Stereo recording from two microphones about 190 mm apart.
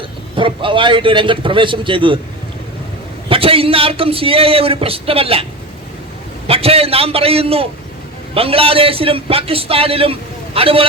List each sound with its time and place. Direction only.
0.3 s a man's voice: 25° right (ahead or behind)
3.2 s a man's voice: 30° right (ahead or behind)
6.5 s a man's voice: 30° right (ahead or behind)